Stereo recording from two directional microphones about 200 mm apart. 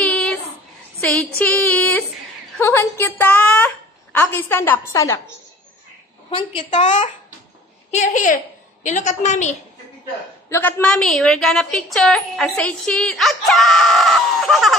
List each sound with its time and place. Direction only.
0.0 s child singing: 5° left (ahead or behind)
1.0 s a sound: 5° left (ahead or behind)
2.6 s a woman's voice: 10° left (ahead or behind)
6.7 s a woman's voice: 35° left (ahead or behind)
10.5 s a woman's voice: 5° left (ahead or behind)